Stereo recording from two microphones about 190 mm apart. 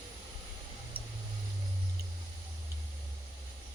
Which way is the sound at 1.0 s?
50° right (ahead or behind).